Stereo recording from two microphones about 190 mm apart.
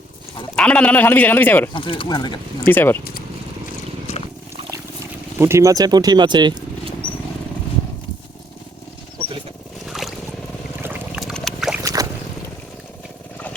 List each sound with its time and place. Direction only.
0.5 s speech: 5° left (ahead or behind)
1.7 s speech: 25° left (ahead or behind)
2.6 s speech: 10° left (ahead or behind)
5.4 s speech: 15° right (ahead or behind)
9.9 s boat: centre (ahead or behind)
10.8 s a sound: 10° right (ahead or behind)
11.2 s a sound: centre (ahead or behind)
11.8 s boat: 20° right (ahead or behind)